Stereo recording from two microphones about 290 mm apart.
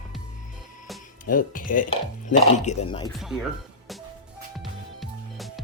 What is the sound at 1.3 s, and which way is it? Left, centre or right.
Speech, left.